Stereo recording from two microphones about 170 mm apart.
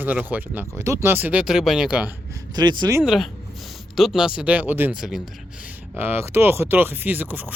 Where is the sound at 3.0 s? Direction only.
5° right (ahead or behind).